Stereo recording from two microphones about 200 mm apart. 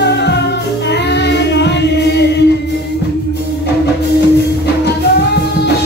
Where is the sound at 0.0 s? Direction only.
55° left (ahead or behind).